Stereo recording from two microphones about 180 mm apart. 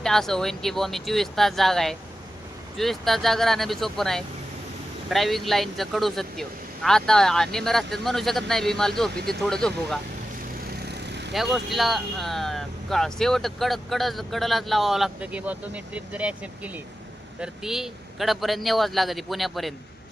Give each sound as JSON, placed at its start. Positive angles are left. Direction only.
{"t": 0.0, "sound": "speech", "side_deg": 0}
{"t": 10.8, "sound": "vehicle", "side_deg": -70}
{"t": 11.3, "sound": "speech", "side_deg": 0}